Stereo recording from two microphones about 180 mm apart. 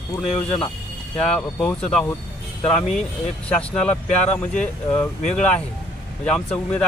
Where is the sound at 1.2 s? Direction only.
5° left (ahead or behind).